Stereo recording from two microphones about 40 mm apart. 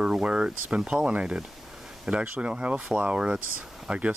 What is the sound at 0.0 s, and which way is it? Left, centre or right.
Speech, right.